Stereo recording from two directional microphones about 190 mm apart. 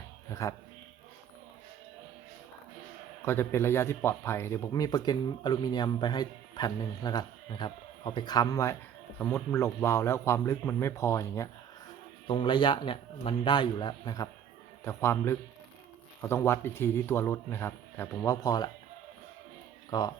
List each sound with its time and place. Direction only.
0.3 s a sound: 15° left (ahead or behind)
3.2 s speech: 10° left (ahead or behind)
12.3 s speech: 25° left (ahead or behind)
19.9 s speech: 20° left (ahead or behind)